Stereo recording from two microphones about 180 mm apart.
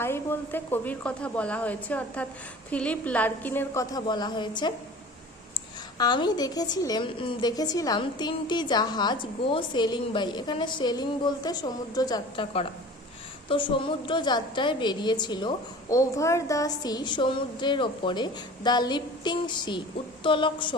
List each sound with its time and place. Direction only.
0.0 s a woman's voice: 15° left (ahead or behind)
6.0 s a woman's voice: 25° left (ahead or behind)